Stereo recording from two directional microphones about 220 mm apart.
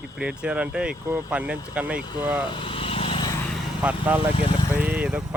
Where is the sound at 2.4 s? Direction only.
25° left (ahead or behind).